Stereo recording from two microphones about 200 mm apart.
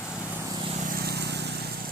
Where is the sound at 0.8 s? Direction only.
50° right (ahead or behind).